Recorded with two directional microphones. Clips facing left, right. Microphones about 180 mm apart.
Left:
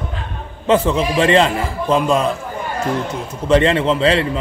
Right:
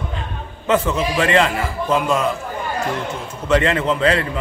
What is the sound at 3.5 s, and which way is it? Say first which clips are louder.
Speech: left 3 dB; 30° left (ahead or behind).